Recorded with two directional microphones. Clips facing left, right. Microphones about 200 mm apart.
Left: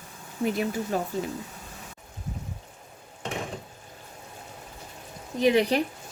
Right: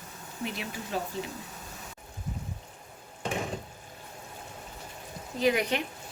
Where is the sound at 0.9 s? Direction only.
50° left (ahead or behind).